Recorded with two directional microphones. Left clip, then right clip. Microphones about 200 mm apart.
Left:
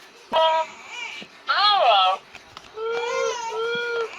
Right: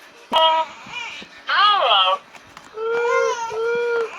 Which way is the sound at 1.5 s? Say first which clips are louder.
Right 2 dB; 25° left (ahead or behind).